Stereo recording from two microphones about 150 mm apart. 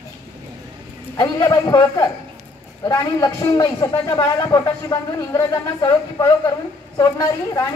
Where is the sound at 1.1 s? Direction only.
25° left (ahead or behind).